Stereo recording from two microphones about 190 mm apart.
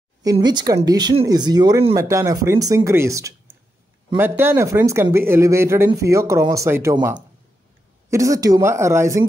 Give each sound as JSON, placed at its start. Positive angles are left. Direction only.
{"t": 0.2, "sound": "speech", "side_deg": -20}